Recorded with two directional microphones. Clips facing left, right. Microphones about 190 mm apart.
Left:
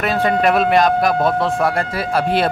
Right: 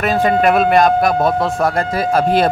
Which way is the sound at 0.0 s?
45° right (ahead or behind).